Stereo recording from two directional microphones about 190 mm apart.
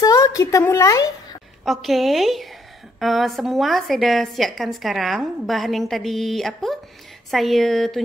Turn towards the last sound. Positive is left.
turn(degrees=0)  # may be behind; listen again after turning